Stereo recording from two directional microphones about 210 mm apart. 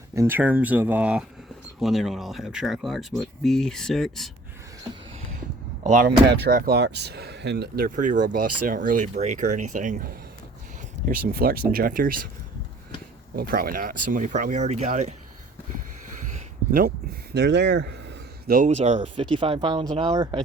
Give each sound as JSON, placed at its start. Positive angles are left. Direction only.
{"t": 0.1, "sound": "speech", "side_deg": -10}
{"t": 5.8, "sound": "speech", "side_deg": -40}
{"t": 13.3, "sound": "speech", "side_deg": -45}
{"t": 17.3, "sound": "speech", "side_deg": -55}